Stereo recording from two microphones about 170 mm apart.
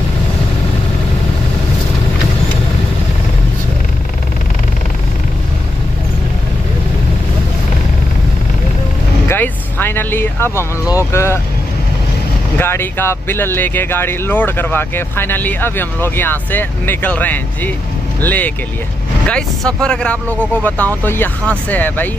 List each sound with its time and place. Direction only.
9.3 s vehicle: 15° left (ahead or behind)
11.1 s speech: 15° left (ahead or behind)
12.5 s speech: 15° left (ahead or behind)